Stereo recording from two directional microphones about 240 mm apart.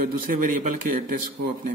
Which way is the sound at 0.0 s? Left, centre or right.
Right.